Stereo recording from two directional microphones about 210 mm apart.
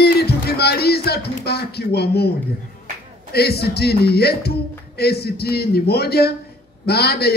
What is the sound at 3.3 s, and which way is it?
A man's voice, 50° left (ahead or behind).